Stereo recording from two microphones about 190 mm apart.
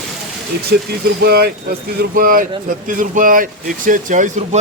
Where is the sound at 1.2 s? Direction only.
55° right (ahead or behind).